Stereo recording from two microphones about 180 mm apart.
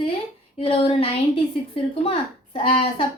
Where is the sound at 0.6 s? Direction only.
30° left (ahead or behind).